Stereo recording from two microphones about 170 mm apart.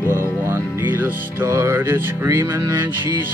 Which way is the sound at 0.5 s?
10° right (ahead or behind).